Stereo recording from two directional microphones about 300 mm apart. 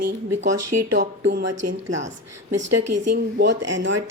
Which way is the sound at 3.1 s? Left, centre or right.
Right.